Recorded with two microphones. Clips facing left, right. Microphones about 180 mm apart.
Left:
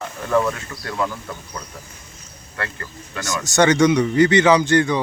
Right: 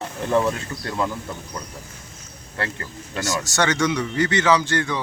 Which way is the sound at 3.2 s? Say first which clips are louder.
Left 5 dB; 20° left (ahead or behind).